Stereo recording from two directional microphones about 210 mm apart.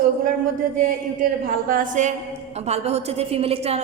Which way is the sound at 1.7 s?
40° right (ahead or behind).